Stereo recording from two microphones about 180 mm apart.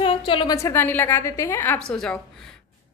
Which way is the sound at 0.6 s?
15° left (ahead or behind).